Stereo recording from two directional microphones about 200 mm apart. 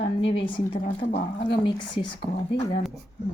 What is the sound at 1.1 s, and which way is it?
Speech, 40° left (ahead or behind).